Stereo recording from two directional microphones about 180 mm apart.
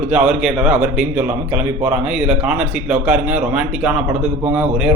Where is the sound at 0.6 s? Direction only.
15° right (ahead or behind).